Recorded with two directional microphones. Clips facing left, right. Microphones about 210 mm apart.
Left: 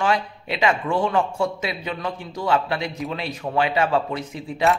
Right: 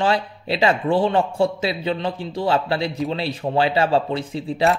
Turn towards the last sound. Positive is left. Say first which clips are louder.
# right 3 dB
turn(degrees=-30)  # may be behind; listen again after turning